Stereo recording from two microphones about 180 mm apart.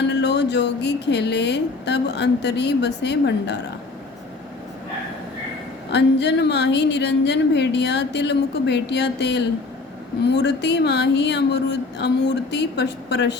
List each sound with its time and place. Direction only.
0.0 s speech: 70° left (ahead or behind)
5.9 s speech: 70° left (ahead or behind)